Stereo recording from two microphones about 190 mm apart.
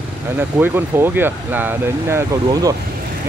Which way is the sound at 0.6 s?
10° right (ahead or behind).